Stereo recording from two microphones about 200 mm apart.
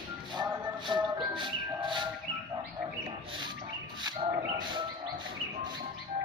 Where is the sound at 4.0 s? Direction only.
25° right (ahead or behind).